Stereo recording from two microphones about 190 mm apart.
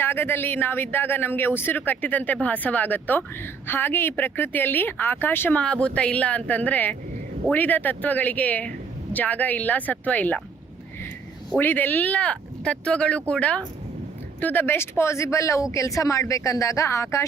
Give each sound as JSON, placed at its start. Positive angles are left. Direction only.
{"t": 0.0, "sound": "speech", "side_deg": 10}
{"t": 11.5, "sound": "speech", "side_deg": 10}